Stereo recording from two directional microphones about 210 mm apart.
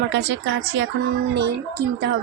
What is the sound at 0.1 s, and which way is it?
Speech, 60° right (ahead or behind).